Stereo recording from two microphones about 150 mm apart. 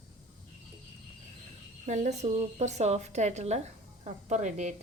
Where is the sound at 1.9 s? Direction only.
50° right (ahead or behind).